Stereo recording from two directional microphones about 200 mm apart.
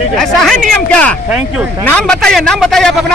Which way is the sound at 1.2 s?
5° right (ahead or behind).